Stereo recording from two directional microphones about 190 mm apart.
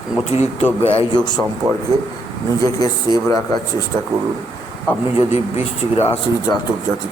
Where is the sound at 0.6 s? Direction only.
25° left (ahead or behind).